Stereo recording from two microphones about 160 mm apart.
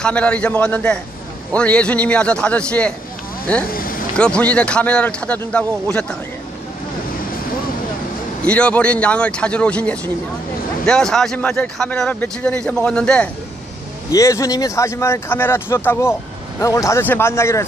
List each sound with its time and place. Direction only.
0.0 s speech: 5° left (ahead or behind)
3.6 s speech: 65° left (ahead or behind)
4.2 s speech: 5° left (ahead or behind)
8.5 s speech: 10° left (ahead or behind)
14.1 s speech: 20° left (ahead or behind)